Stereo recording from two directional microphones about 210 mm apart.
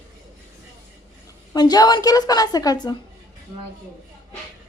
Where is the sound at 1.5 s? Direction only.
20° left (ahead or behind).